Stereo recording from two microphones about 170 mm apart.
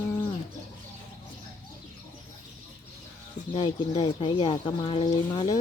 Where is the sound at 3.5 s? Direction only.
30° left (ahead or behind).